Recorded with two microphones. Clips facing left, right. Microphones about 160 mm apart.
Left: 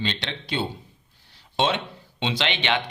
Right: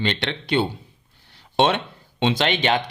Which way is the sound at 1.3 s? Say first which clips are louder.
Right 5 dB; 60° right (ahead or behind).